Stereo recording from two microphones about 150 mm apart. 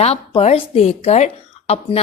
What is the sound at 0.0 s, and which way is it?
A woman's voice, 45° left (ahead or behind).